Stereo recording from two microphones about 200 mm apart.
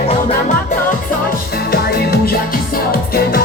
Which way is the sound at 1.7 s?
50° left (ahead or behind).